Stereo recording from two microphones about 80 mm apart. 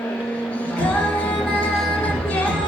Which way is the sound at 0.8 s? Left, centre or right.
Centre.